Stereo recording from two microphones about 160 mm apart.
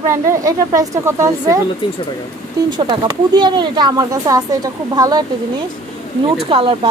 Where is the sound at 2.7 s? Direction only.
30° right (ahead or behind).